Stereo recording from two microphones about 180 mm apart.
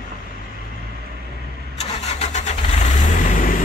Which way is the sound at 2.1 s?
40° left (ahead or behind).